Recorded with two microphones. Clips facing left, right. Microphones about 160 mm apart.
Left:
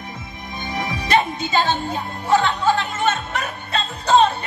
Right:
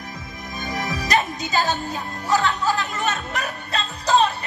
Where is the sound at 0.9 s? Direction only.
40° right (ahead or behind).